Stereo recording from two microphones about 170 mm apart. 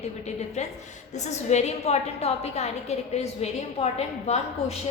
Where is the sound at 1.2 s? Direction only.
40° left (ahead or behind).